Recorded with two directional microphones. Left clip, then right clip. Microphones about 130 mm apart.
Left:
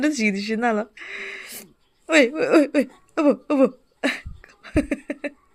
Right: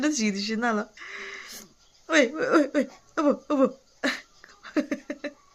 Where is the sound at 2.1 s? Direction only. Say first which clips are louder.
Left 5 dB; 40° left (ahead or behind).